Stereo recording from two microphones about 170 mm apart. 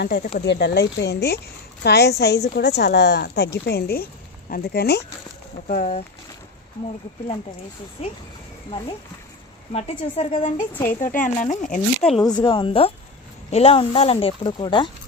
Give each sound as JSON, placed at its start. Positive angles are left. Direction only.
{"t": 0.3, "sound": "a woman's voice", "side_deg": 80}
{"t": 5.6, "sound": "speech", "side_deg": 55}
{"t": 8.0, "sound": "speech", "side_deg": 35}
{"t": 9.7, "sound": "speech", "side_deg": 35}
{"t": 11.0, "sound": "speech", "side_deg": 50}
{"t": 12.2, "sound": "speech", "side_deg": 25}